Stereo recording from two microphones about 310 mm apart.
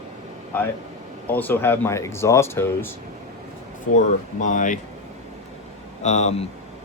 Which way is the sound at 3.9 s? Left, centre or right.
Left.